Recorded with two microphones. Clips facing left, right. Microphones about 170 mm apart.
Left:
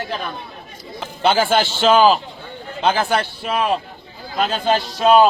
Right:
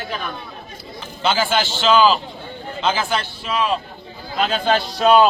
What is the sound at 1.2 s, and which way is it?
A man's voice, 55° left (ahead or behind).